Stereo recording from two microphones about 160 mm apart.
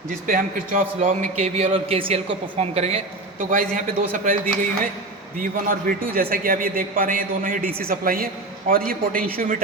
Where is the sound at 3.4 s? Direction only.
55° right (ahead or behind).